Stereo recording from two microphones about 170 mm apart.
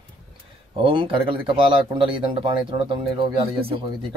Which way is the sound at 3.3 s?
30° right (ahead or behind).